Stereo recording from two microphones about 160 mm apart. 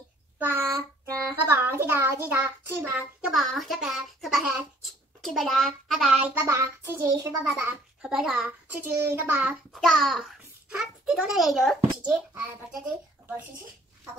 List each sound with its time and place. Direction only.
0.4 s a child's voice: 15° right (ahead or behind)
6.4 s a child's voice: 20° right (ahead or behind)
8.8 s a child's voice: 15° right (ahead or behind)